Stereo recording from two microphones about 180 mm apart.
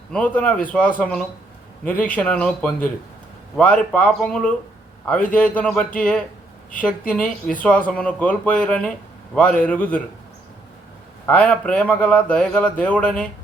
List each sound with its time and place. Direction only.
0.1 s speech: 5° left (ahead or behind)
11.3 s speech: 5° left (ahead or behind)